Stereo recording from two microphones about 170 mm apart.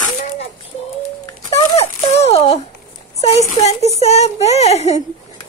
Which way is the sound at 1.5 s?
35° left (ahead or behind).